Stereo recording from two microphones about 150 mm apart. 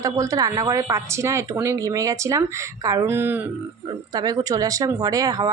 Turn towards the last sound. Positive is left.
turn(degrees=-25)  # may be behind; listen again after turning